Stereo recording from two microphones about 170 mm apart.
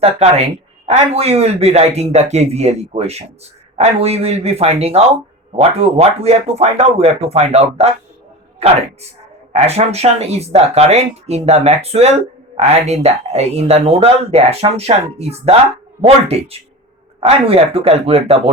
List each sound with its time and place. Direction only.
0.0 s speech: 40° right (ahead or behind)